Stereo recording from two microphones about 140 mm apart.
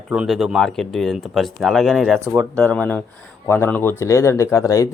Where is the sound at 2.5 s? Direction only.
10° left (ahead or behind).